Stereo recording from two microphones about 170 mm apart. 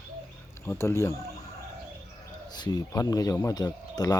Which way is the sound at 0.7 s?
15° left (ahead or behind).